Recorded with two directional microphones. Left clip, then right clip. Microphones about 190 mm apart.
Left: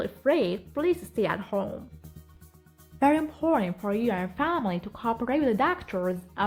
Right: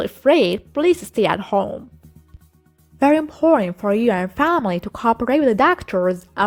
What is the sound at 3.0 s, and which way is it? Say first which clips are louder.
A woman's voice: right 8 dB; 30° right (ahead or behind).